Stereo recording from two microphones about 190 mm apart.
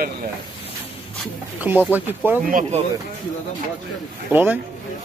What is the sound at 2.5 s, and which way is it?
Speech, 45° right (ahead or behind).